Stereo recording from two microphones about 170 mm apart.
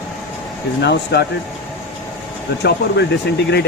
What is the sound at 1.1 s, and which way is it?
Speech, 90° left.